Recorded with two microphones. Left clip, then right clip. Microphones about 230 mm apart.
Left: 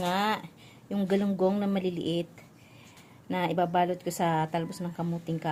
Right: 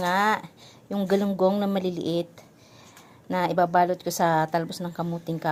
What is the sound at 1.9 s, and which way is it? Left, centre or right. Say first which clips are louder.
Speech: right 4 dB; right.